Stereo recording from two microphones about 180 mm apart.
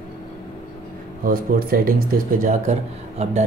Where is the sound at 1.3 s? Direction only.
55° right (ahead or behind).